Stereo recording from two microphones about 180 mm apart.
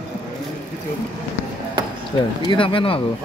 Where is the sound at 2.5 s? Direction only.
30° left (ahead or behind).